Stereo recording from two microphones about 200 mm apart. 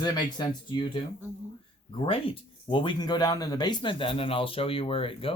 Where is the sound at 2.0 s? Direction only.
25° left (ahead or behind).